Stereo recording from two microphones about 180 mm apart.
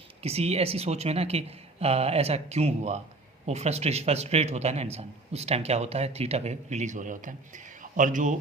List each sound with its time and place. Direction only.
0.2 s a man's voice: 35° right (ahead or behind)